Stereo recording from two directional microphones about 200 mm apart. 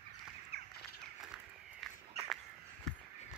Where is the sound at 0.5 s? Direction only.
55° right (ahead or behind).